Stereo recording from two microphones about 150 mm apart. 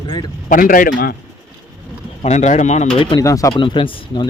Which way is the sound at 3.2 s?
20° left (ahead or behind).